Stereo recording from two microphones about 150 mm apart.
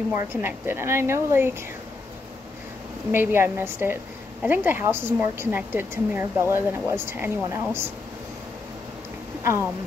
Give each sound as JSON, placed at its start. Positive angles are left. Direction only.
{"t": 0.1, "sound": "a woman's voice", "side_deg": -15}
{"t": 3.1, "sound": "a woman's voice", "side_deg": -15}
{"t": 9.4, "sound": "a woman's voice", "side_deg": -20}